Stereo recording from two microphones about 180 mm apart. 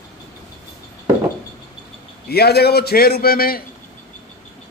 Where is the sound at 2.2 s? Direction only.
60° left (ahead or behind).